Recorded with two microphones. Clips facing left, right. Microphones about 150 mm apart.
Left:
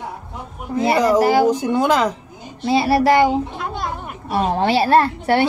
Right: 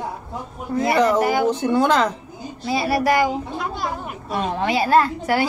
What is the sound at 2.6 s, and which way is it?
A woman's voice, 25° left (ahead or behind).